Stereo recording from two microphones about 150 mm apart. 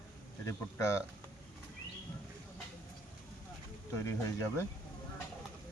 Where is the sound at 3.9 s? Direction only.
20° left (ahead or behind).